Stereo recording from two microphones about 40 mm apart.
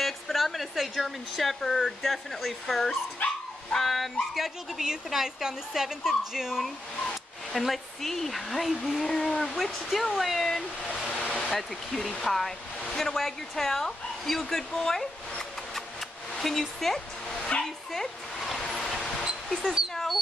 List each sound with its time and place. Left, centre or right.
0.0 s speech: centre
4.7 s a woman's voice: centre
7.5 s speech: centre
9.0 s speech: centre
9.6 s speech: centre
11.1 s waterfall: centre
11.4 s speech: centre
17.6 s a sound: centre
18.6 s vehicle: centre
18.9 s a sound: centre